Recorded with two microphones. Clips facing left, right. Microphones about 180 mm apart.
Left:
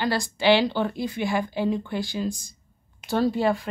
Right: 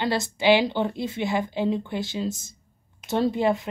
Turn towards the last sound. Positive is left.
turn(degrees=-20)  # may be behind; listen again after turning